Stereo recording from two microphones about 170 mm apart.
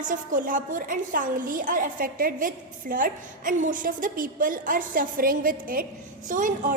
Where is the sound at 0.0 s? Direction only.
50° right (ahead or behind).